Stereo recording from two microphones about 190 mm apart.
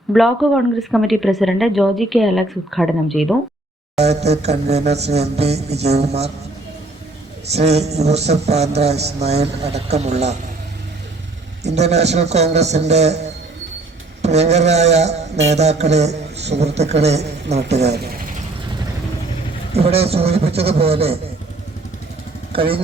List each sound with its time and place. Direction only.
0.1 s a woman's voice: centre (ahead or behind)
3.9 s speech: 35° right (ahead or behind)
7.5 s speech: 35° right (ahead or behind)
11.6 s speech: 35° right (ahead or behind)
14.2 s speech: 35° right (ahead or behind)
17.8 s speech: 60° right (ahead or behind)
19.7 s speech: 30° right (ahead or behind)
22.5 s speech: 30° right (ahead or behind)